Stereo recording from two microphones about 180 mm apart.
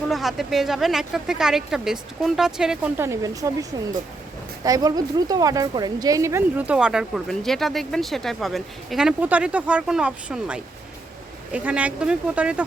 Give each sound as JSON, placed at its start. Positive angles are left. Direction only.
{"t": 0.1, "sound": "a woman's voice", "side_deg": 0}
{"t": 3.0, "sound": "a woman's voice", "side_deg": -15}